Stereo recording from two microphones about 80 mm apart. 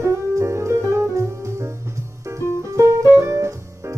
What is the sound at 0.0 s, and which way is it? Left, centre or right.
Music, right.